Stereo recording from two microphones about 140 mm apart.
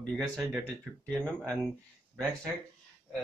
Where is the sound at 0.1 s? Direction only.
5° right (ahead or behind).